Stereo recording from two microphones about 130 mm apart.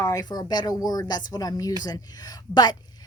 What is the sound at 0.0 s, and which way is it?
A woman's voice, 30° left (ahead or behind).